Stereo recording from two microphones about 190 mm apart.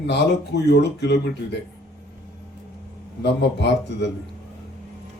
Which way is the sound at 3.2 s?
65° left (ahead or behind).